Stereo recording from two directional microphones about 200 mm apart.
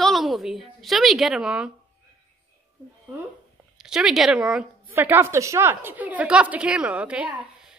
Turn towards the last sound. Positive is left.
turn(degrees=-5)  # may be behind; listen again after turning